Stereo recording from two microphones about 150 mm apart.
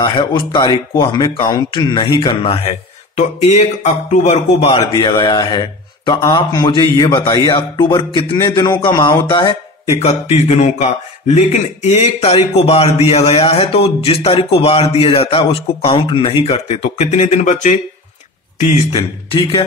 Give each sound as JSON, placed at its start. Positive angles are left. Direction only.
{"t": 0.0, "sound": "a man's voice", "side_deg": 30}
{"t": 4.9, "sound": "a man's voice", "side_deg": 30}
{"t": 9.9, "sound": "a man's voice", "side_deg": 45}
{"t": 18.9, "sound": "a man's voice", "side_deg": 35}